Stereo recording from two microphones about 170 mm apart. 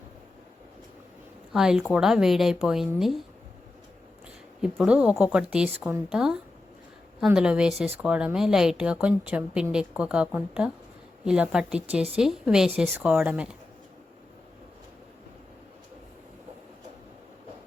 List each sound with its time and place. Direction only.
1.5 s a woman's voice: 5° right (ahead or behind)
4.6 s a woman's voice: 5° right (ahead or behind)